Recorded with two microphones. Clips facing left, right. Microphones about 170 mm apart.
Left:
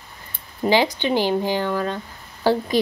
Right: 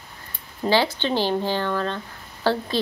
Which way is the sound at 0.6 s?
15° left (ahead or behind).